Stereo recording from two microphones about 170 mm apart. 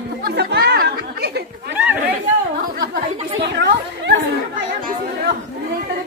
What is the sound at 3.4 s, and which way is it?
Speech, 85° right.